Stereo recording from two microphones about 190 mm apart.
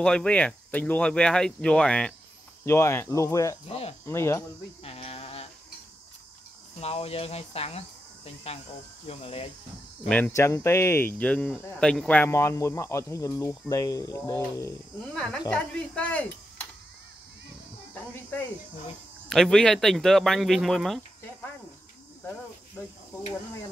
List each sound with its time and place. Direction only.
0.0 s speech: 5° left (ahead or behind)
3.6 s speech: 30° left (ahead or behind)
4.0 s speech: 15° left (ahead or behind)
4.8 s a sound: 30° left (ahead or behind)
6.8 s speech: 30° left (ahead or behind)
10.0 s speech: 10° left (ahead or behind)
19.2 s speech: centre (ahead or behind)